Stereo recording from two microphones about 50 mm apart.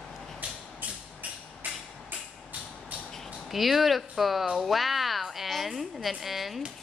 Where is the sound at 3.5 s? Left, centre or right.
Centre.